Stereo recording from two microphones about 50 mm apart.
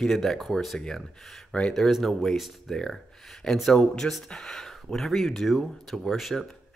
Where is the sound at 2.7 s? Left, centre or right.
Centre.